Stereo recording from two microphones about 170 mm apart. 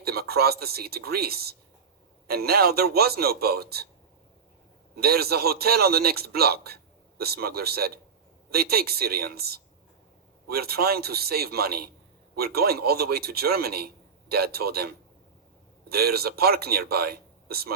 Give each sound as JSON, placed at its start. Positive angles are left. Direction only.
{"t": 0.0, "sound": "a man's voice", "side_deg": -65}
{"t": 4.9, "sound": "a man's voice", "side_deg": -65}
{"t": 15.9, "sound": "a man's voice", "side_deg": -65}